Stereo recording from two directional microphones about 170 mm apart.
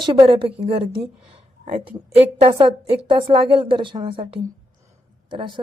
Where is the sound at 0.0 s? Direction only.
35° right (ahead or behind).